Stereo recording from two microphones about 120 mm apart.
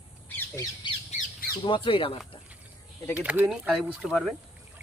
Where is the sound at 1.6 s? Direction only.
45° left (ahead or behind).